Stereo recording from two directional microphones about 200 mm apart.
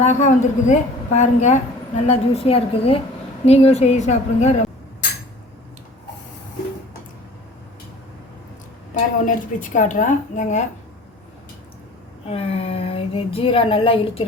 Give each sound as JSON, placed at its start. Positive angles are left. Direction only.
{"t": 0.0, "sound": "a woman's voice", "side_deg": 35}
{"t": 9.2, "sound": "a woman's voice", "side_deg": 40}
{"t": 12.3, "sound": "speech", "side_deg": 30}